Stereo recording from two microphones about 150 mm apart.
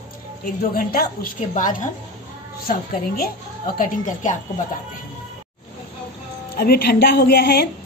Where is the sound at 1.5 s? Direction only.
60° left (ahead or behind).